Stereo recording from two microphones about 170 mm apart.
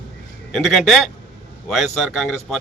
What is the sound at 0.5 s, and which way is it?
A man's voice, centre (ahead or behind).